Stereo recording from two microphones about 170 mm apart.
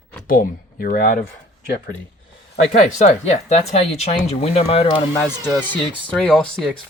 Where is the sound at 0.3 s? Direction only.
55° left (ahead or behind).